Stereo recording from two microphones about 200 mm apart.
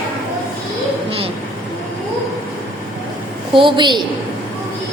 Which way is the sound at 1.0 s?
30° right (ahead or behind).